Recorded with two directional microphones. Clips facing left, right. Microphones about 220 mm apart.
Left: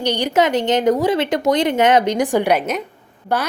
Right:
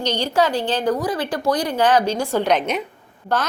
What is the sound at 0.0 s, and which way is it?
A woman's voice, 15° left (ahead or behind).